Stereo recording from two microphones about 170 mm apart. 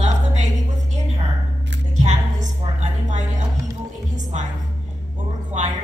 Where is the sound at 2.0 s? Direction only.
45° right (ahead or behind).